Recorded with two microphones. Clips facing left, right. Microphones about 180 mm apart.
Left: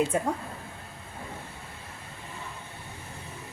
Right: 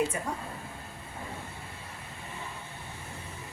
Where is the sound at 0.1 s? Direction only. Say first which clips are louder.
Left 8 dB; 80° left.